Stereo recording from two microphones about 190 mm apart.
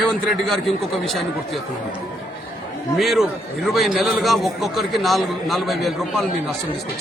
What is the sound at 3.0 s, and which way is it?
A man's voice, centre (ahead or behind).